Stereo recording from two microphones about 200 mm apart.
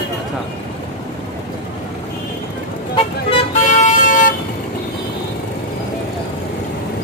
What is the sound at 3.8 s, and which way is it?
Vehicle, 40° left (ahead or behind).